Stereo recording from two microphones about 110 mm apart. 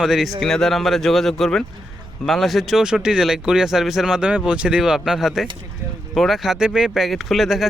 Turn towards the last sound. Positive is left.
turn(degrees=0)  # may be behind; listen again after turning